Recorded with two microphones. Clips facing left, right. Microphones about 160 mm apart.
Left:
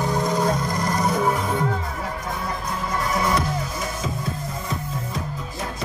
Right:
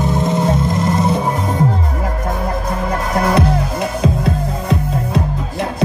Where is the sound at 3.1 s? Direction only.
65° right (ahead or behind).